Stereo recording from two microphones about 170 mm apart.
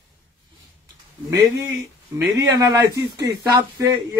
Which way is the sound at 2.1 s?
15° right (ahead or behind).